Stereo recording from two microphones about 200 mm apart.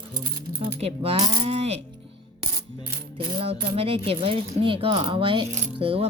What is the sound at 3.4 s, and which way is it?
Speech, 30° right (ahead or behind).